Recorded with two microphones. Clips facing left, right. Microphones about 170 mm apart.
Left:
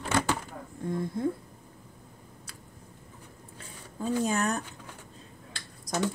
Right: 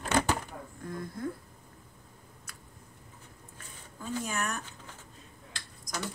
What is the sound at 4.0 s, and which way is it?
Speech, 35° left (ahead or behind).